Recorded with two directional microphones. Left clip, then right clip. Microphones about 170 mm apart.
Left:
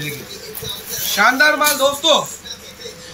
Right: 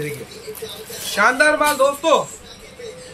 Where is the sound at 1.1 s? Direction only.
45° right (ahead or behind).